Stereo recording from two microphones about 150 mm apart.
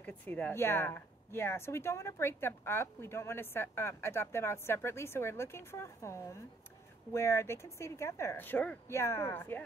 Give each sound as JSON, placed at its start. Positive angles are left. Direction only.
{"t": 0.0, "sound": "a woman's voice", "side_deg": 10}